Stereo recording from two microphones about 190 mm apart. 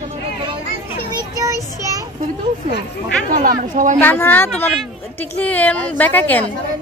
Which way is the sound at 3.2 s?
45° right (ahead or behind).